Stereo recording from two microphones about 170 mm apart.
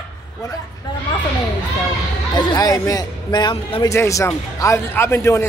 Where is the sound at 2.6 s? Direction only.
20° left (ahead or behind).